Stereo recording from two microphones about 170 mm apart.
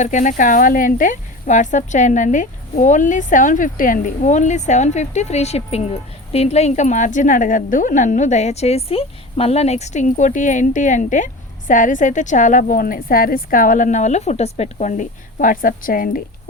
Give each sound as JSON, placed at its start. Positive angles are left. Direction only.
{"t": 0.0, "sound": "speech", "side_deg": 45}